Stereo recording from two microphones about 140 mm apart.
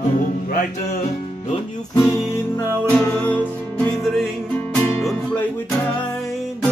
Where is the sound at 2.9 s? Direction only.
10° left (ahead or behind).